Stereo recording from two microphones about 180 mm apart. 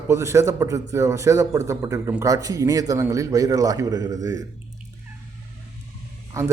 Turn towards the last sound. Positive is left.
turn(degrees=-15)  # may be behind; listen again after turning